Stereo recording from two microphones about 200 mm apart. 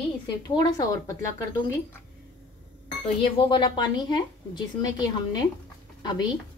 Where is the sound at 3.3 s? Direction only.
25° left (ahead or behind).